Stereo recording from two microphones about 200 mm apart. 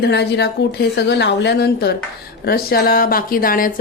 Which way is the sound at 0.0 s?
55° left (ahead or behind).